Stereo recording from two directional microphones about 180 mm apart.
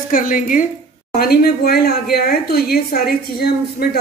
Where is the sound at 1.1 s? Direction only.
60° left (ahead or behind).